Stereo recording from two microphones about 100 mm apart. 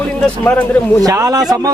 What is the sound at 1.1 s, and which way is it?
Speech, 35° right (ahead or behind).